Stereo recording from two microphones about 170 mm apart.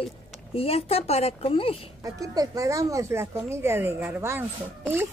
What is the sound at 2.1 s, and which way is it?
Speech, 20° right (ahead or behind).